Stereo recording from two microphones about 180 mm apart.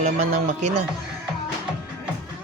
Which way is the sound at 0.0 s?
35° right (ahead or behind).